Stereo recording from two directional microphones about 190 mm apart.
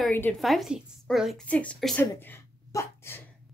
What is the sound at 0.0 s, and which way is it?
A woman's voice, 10° left (ahead or behind).